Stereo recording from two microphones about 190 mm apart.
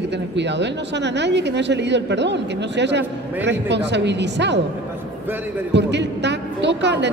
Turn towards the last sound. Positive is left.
turn(degrees=-65)  # may be behind; listen again after turning